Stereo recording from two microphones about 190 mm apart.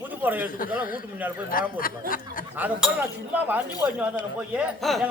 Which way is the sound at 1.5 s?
50° left (ahead or behind).